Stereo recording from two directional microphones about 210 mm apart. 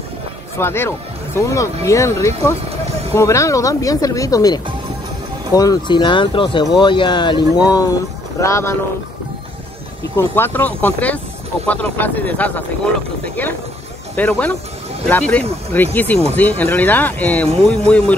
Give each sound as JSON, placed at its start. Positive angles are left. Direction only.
{"t": 0.6, "sound": "speech", "side_deg": 10}
{"t": 10.1, "sound": "speech", "side_deg": 10}
{"t": 14.1, "sound": "speech", "side_deg": 5}